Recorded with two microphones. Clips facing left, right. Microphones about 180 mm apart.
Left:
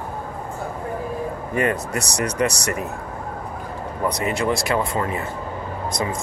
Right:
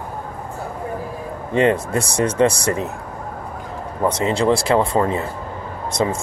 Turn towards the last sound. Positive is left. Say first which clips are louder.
# right 4 dB
turn(degrees=-25)  # may be behind; listen again after turning